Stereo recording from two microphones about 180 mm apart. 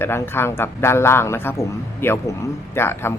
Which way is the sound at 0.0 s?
15° left (ahead or behind).